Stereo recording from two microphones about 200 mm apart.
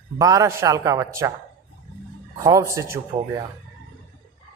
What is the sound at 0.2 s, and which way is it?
A man's voice, 15° right (ahead or behind).